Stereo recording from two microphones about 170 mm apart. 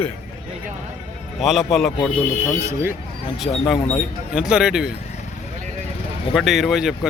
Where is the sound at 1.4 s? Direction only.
Centre (ahead or behind).